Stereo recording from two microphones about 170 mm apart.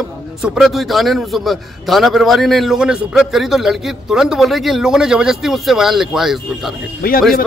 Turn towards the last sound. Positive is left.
turn(degrees=60)  # may be behind; listen again after turning